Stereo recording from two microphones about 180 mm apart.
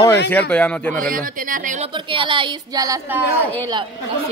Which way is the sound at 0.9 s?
50° right (ahead or behind).